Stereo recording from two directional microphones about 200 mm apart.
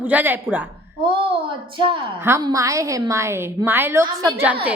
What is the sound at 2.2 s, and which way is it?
A woman's voice, 15° right (ahead or behind).